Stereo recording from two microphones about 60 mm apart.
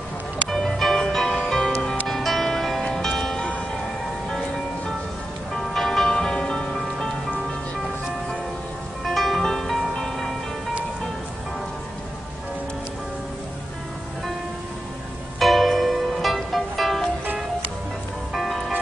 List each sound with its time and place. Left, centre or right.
0.5 s music: centre
9.0 s music: centre
15.3 s music: centre
18.3 s music: centre